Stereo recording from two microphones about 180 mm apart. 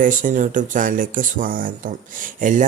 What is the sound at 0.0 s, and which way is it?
Speech, 45° right (ahead or behind).